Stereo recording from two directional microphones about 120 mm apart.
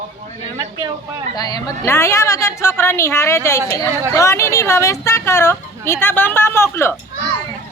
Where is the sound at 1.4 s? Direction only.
35° left (ahead or behind).